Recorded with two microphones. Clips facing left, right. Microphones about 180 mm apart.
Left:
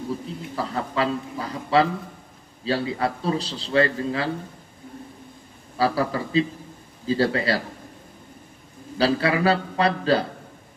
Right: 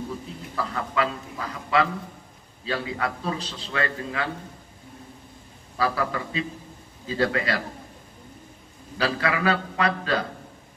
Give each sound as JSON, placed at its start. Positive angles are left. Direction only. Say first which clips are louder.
{"t": 0.6, "sound": "a man's voice", "louder": "left 1 dB", "side_deg": 30}
{"t": 5.8, "sound": "a man's voice", "louder": "left 3 dB", "side_deg": 30}
{"t": 8.9, "sound": "a man's voice", "louder": "left 4 dB", "side_deg": 30}